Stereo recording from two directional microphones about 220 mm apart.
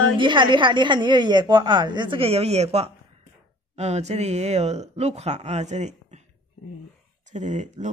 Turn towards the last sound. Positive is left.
turn(degrees=-35)  # may be behind; listen again after turning